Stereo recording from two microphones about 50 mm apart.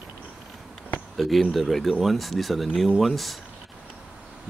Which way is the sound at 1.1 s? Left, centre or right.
Centre.